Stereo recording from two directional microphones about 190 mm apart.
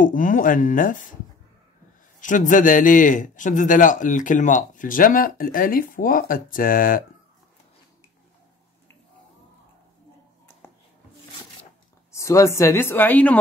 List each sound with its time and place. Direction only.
0.0 s a man's voice: 45° left (ahead or behind)
2.1 s a man's voice: 40° left (ahead or behind)
12.1 s a woman's voice: 15° left (ahead or behind)